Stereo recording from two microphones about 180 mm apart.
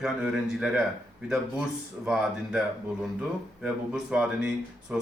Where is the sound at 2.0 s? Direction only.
5° right (ahead or behind).